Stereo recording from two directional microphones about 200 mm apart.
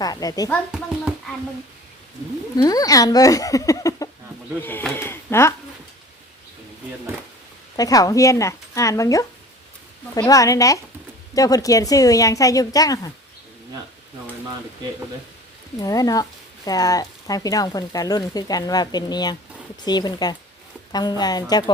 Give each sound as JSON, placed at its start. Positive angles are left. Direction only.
{"t": 0.0, "sound": "speech", "side_deg": 20}
{"t": 0.7, "sound": "a sound", "side_deg": -5}
{"t": 2.6, "sound": "a woman's voice", "side_deg": 20}
{"t": 7.8, "sound": "a woman's voice", "side_deg": 20}
{"t": 15.8, "sound": "a woman's voice", "side_deg": 20}